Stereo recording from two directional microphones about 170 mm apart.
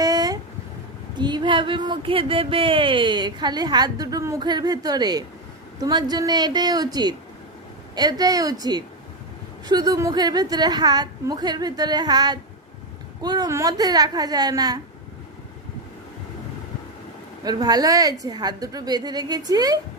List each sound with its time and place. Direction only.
0.0 s a sound: 20° right (ahead or behind)
1.2 s speech: 25° right (ahead or behind)
17.4 s speech: 25° right (ahead or behind)